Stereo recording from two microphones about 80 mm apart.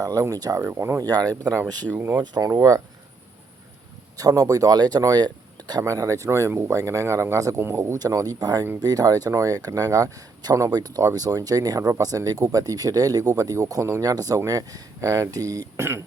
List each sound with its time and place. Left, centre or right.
0.0 s speech: right
0.6 s speech: right
1.0 s speech: right
1.9 s speech: right
4.2 s speech: right
6.5 s speech: right
6.7 s speech: right
7.9 s speech: right
15.8 s speech: right